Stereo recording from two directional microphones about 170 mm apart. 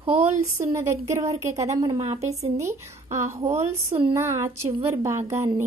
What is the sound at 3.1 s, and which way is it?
Speech, 15° right (ahead or behind).